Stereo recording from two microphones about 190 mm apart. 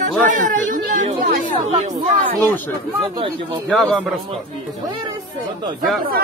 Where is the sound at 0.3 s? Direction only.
40° right (ahead or behind).